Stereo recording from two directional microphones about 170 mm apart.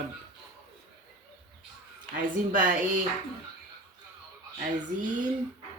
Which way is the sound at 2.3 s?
50° right (ahead or behind).